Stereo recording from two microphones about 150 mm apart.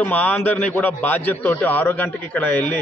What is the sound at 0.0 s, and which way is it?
A man's voice, 10° left (ahead or behind).